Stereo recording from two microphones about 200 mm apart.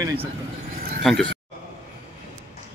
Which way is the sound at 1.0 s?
5° left (ahead or behind).